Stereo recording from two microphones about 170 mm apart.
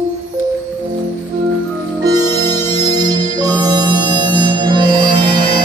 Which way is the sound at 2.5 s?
25° right (ahead or behind).